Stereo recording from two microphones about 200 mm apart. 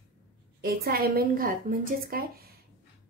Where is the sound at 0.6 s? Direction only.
50° right (ahead or behind).